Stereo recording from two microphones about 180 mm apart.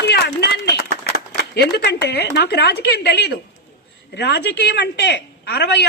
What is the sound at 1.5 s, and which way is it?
A woman's voice, 65° left (ahead or behind).